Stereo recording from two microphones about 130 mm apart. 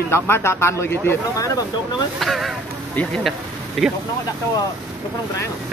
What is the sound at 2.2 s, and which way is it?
Speech, centre (ahead or behind).